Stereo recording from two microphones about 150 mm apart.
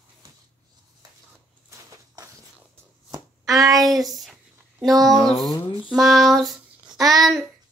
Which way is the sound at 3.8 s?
Centre (ahead or behind).